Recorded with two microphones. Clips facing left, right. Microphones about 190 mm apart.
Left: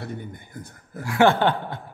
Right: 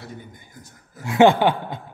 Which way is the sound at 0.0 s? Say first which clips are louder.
Left 5 dB; 60° left (ahead or behind).